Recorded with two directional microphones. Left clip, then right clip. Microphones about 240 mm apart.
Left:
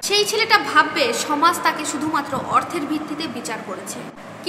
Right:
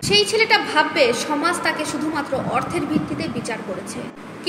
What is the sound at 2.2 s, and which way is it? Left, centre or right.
A woman's voice, centre.